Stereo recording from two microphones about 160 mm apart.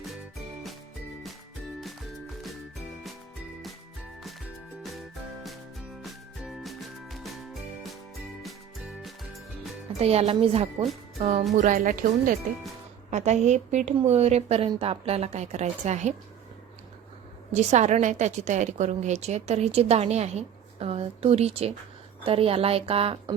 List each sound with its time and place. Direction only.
4.8 s music: centre (ahead or behind)
9.0 s music: centre (ahead or behind)
10.0 s a woman's voice: 40° right (ahead or behind)
17.5 s a woman's voice: 45° right (ahead or behind)